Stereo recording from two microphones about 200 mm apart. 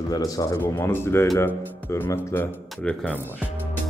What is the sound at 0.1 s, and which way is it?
Speech, 20° left (ahead or behind).